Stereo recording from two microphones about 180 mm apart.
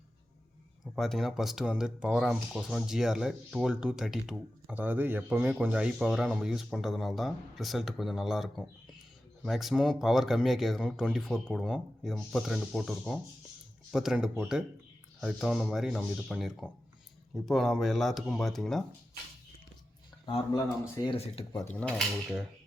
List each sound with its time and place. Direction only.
0.9 s speech: centre (ahead or behind)
20.2 s speech: 25° left (ahead or behind)
21.5 s speech: 10° left (ahead or behind)